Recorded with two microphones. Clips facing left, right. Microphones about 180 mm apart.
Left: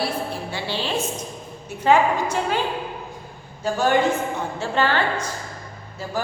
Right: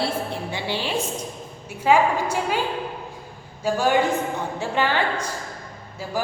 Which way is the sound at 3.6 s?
10° right (ahead or behind).